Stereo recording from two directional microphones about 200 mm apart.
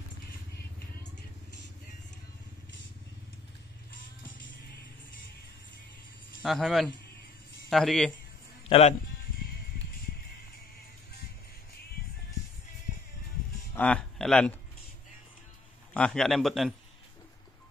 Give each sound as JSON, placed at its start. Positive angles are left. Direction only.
{"t": 6.4, "sound": "a man's voice", "side_deg": 0}
{"t": 8.6, "sound": "speech", "side_deg": 30}
{"t": 9.4, "sound": "music", "side_deg": 50}
{"t": 13.7, "sound": "speech", "side_deg": 5}
{"t": 15.9, "sound": "a man's voice", "side_deg": 5}